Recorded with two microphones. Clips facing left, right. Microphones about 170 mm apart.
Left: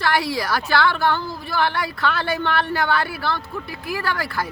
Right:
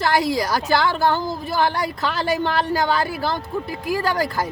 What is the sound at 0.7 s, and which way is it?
A woman's voice, 40° right (ahead or behind).